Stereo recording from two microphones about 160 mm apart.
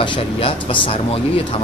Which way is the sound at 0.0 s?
30° left (ahead or behind).